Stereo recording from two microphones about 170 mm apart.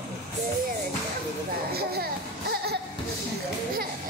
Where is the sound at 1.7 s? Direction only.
65° right (ahead or behind).